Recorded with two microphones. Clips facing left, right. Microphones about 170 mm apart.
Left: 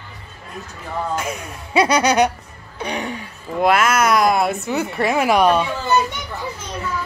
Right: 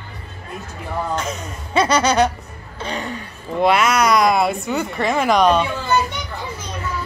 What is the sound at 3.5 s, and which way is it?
Speech, centre (ahead or behind).